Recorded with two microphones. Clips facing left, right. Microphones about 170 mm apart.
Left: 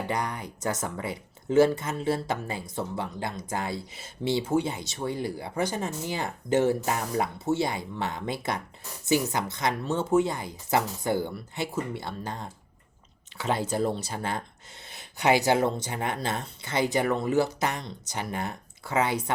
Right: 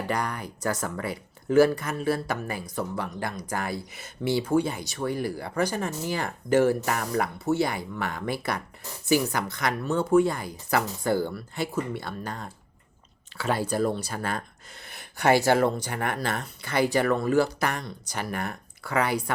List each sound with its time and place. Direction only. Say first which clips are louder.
0.1 s speech: right 1 dB; 20° left (ahead or behind)